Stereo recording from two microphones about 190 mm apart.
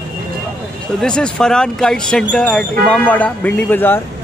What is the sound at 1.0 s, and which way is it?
Speech, 5° left (ahead or behind).